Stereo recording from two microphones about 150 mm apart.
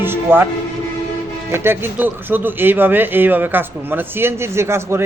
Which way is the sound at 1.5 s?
15° right (ahead or behind).